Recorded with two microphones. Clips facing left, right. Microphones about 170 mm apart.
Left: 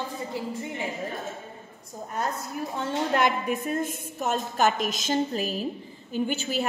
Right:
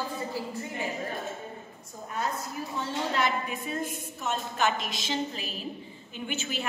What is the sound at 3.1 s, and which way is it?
A woman's voice, 50° left (ahead or behind).